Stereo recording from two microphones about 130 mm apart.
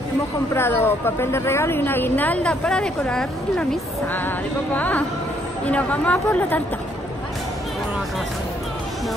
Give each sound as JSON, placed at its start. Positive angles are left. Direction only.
{"t": 0.6, "sound": "speech", "side_deg": 15}